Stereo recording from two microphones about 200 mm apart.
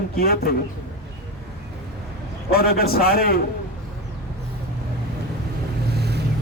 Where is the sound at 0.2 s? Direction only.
50° left (ahead or behind).